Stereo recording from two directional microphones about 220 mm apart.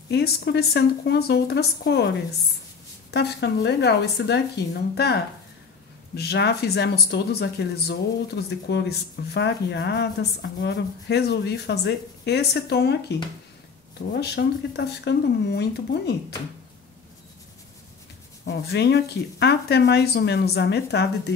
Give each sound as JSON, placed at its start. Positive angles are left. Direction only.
{"t": 0.1, "sound": "speech", "side_deg": 45}
{"t": 3.1, "sound": "speech", "side_deg": 50}
{"t": 14.1, "sound": "speech", "side_deg": 50}
{"t": 18.4, "sound": "speech", "side_deg": 50}